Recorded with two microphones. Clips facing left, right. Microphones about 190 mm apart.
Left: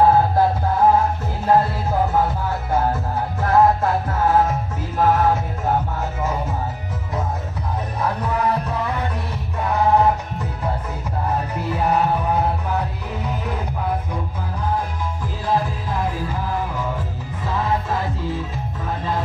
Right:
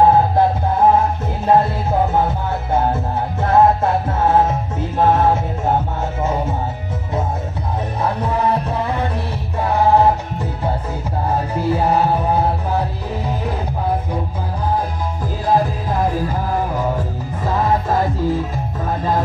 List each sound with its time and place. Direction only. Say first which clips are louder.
0.0 s music: right 2 dB; 20° right (ahead or behind)
8.0 s music: right 2 dB; 30° right (ahead or behind)
11.2 s music: right 5 dB; 30° right (ahead or behind)
15.4 s music: right 5 dB; 40° right (ahead or behind)